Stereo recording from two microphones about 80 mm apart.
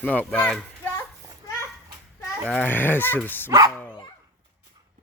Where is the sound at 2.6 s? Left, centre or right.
Left.